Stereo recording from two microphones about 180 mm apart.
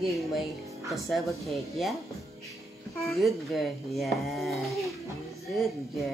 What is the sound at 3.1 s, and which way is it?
A woman's voice, centre (ahead or behind).